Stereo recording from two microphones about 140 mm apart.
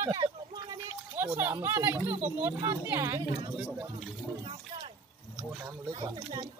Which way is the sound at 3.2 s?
35° right (ahead or behind).